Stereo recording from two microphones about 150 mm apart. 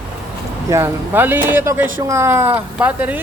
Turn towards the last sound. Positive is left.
turn(degrees=-10)  # may be behind; listen again after turning